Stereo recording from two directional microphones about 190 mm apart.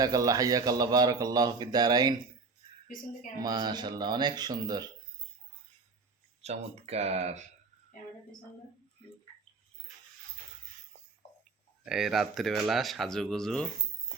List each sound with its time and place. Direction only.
0.0 s speech: 20° right (ahead or behind)
2.8 s a woman's voice: 40° left (ahead or behind)
3.4 s speech: 20° right (ahead or behind)
6.4 s speech: 35° right (ahead or behind)
11.9 s speech: centre (ahead or behind)